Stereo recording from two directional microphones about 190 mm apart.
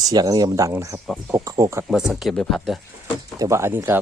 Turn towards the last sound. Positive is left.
turn(degrees=-10)  # may be behind; listen again after turning